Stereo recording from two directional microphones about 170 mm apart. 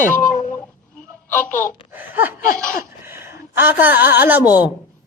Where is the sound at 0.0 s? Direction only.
50° left (ahead or behind).